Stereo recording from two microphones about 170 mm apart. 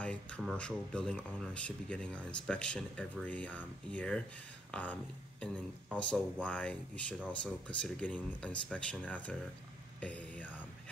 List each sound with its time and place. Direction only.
0.0 s speech: 5° left (ahead or behind)
4.6 s a sound: 10° left (ahead or behind)
5.9 s speech: 5° left (ahead or behind)